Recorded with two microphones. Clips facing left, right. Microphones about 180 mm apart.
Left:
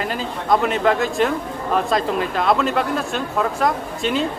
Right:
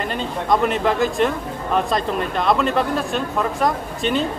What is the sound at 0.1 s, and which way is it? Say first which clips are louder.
A man's voice: right 1 dB; centre (ahead or behind).